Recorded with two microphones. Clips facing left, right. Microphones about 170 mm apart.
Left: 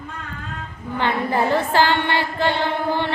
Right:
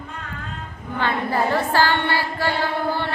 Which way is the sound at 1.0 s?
20° left (ahead or behind).